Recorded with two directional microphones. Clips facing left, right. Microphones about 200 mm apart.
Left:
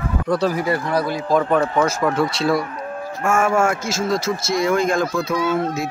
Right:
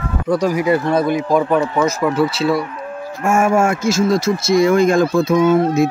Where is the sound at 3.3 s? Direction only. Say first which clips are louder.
Right 3 dB; 25° right (ahead or behind).